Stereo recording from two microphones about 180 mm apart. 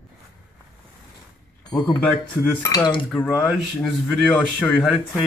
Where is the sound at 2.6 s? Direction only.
20° left (ahead or behind).